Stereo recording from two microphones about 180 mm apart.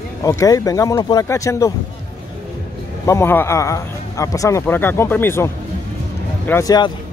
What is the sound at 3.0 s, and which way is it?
A man's voice, 15° left (ahead or behind).